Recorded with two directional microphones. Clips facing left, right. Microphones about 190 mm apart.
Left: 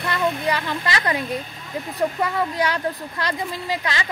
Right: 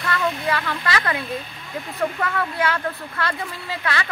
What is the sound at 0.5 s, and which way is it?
Speech, 20° left (ahead or behind).